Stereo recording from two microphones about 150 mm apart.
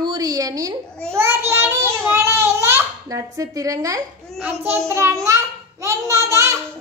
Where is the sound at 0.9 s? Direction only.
5° left (ahead or behind).